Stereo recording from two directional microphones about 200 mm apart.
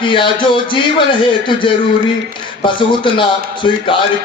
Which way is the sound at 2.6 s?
25° left (ahead or behind).